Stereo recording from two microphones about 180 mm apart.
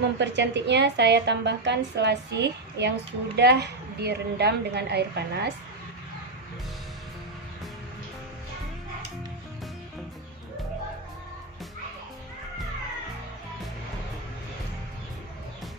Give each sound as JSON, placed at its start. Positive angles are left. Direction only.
{"t": 0.2, "sound": "a woman's voice", "side_deg": -70}